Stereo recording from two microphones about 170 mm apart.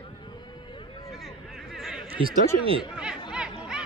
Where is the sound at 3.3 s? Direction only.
5° right (ahead or behind).